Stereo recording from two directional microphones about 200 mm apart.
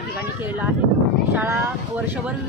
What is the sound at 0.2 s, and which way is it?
Speech, 10° right (ahead or behind).